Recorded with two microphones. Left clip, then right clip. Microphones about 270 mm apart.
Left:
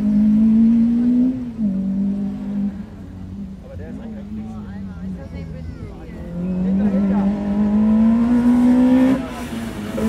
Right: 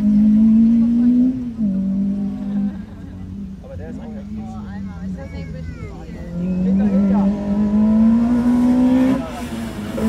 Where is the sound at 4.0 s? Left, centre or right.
Right.